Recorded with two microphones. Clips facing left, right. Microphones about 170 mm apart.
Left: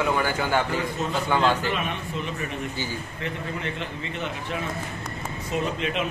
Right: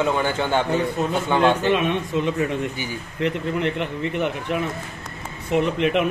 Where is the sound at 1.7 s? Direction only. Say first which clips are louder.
Right 8 dB; 75° right (ahead or behind).